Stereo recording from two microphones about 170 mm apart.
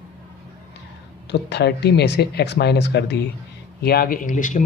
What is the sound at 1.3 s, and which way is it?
Speech, 75° left (ahead or behind).